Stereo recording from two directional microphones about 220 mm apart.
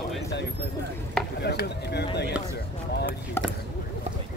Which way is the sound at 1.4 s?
50° left (ahead or behind).